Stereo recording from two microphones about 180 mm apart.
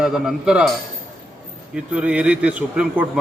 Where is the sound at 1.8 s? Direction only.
5° right (ahead or behind).